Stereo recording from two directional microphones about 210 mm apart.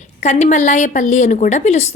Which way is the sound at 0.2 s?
35° left (ahead or behind).